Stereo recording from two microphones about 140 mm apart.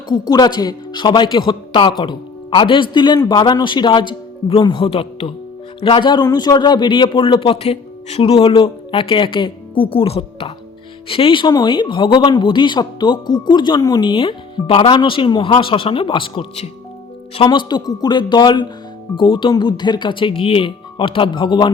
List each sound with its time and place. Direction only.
0.1 s speech: 30° left (ahead or behind)